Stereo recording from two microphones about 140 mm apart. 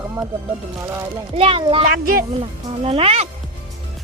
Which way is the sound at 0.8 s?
20° right (ahead or behind).